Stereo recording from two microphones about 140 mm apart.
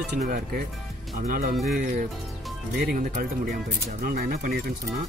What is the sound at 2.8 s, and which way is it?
Speech, 90° right.